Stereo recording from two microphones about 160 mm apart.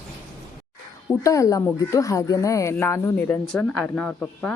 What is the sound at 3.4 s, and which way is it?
Speech, 5° left (ahead or behind).